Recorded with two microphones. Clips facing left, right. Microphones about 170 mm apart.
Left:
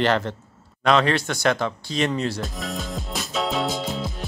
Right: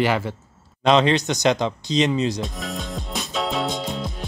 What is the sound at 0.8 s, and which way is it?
Speech, 20° right (ahead or behind).